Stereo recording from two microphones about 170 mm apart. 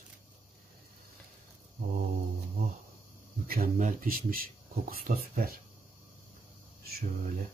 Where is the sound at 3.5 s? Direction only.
55° right (ahead or behind).